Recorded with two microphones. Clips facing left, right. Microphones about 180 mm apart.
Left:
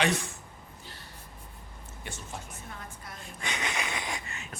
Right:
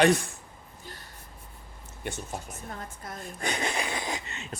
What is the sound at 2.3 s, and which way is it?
Speech, 40° right (ahead or behind).